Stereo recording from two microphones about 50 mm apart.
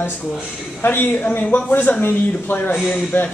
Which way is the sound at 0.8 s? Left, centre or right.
Left.